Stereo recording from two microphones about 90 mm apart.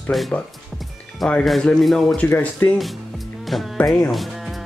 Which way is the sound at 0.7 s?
Centre (ahead or behind).